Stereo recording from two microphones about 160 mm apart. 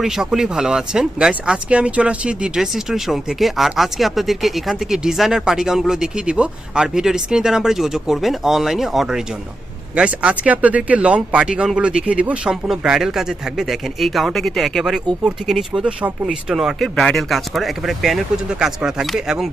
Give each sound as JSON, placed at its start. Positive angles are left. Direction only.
{"t": 0.0, "sound": "speech", "side_deg": 0}